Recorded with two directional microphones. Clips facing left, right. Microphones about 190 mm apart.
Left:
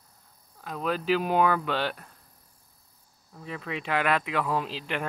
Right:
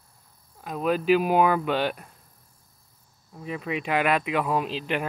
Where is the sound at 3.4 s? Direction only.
15° right (ahead or behind).